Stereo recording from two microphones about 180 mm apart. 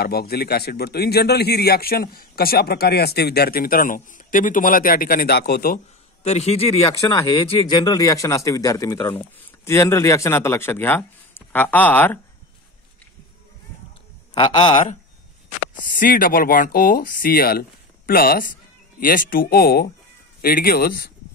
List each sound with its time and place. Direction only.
0.0 s a man's voice: 60° left (ahead or behind)
6.2 s a man's voice: 35° left (ahead or behind)
7.0 s speech: 20° left (ahead or behind)
14.3 s speech: 25° left (ahead or behind)
15.7 s a man's voice: 50° left (ahead or behind)